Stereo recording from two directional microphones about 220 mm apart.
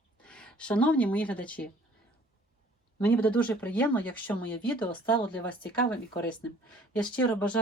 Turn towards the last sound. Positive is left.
turn(degrees=5)  # may be behind; listen again after turning